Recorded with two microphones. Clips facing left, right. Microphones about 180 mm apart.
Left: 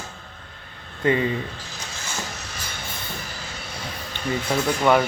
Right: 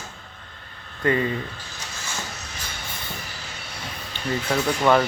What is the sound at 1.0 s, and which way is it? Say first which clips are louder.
Speech: left 1 dB; 20° left (ahead or behind).